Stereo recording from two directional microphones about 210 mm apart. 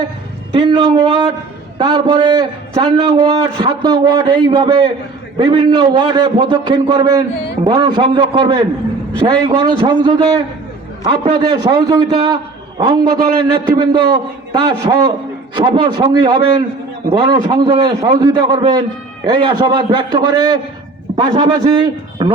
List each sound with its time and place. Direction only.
0.5 s a man's voice: 20° right (ahead or behind)